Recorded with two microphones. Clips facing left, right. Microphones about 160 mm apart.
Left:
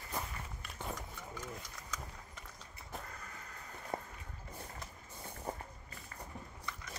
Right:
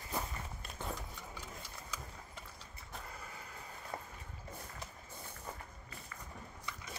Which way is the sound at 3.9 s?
25° left (ahead or behind).